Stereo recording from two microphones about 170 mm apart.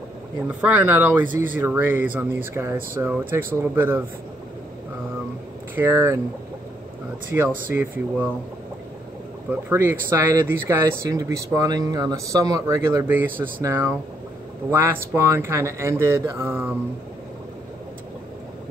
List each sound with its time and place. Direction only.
0.5 s speech: 10° right (ahead or behind)
5.8 s speech: 10° right (ahead or behind)
7.3 s speech: 15° right (ahead or behind)
9.5 s speech: 15° right (ahead or behind)